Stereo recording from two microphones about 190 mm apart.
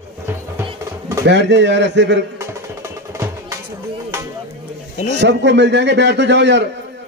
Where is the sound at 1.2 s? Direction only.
65° right (ahead or behind).